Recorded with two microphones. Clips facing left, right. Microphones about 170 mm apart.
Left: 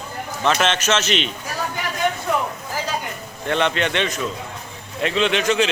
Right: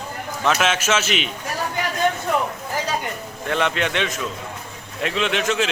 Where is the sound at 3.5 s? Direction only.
5° right (ahead or behind).